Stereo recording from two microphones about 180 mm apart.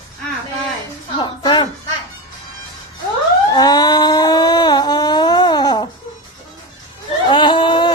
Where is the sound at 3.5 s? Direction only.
20° left (ahead or behind).